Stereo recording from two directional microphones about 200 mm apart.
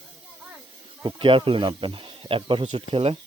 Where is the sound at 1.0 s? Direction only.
25° right (ahead or behind).